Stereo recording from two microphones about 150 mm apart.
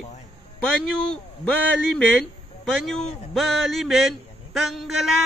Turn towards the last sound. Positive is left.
turn(degrees=0)  # may be behind; listen again after turning